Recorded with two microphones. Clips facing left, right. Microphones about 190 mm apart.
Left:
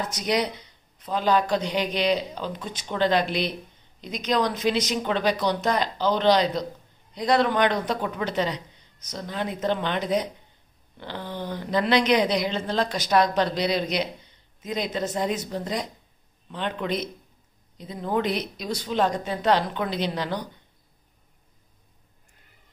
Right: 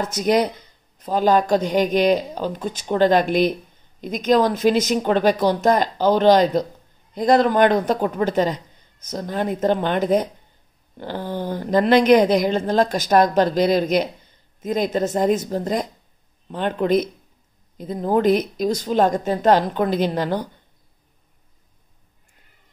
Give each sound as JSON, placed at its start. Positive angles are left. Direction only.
{"t": 0.2, "sound": "a woman's voice", "side_deg": -50}